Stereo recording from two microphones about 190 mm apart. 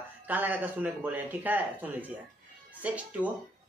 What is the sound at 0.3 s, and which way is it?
Speech, 10° right (ahead or behind).